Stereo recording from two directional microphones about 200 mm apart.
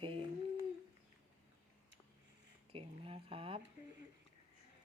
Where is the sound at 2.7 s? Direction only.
25° right (ahead or behind).